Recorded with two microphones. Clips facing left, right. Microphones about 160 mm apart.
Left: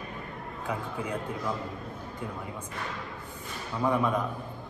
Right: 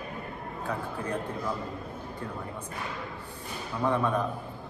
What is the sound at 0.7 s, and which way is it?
Speech, 10° left (ahead or behind).